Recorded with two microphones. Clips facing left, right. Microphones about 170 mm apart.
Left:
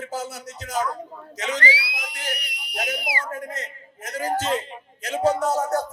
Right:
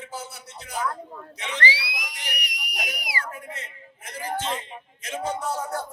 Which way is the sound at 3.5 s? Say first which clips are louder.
Left 5 dB; 40° left (ahead or behind).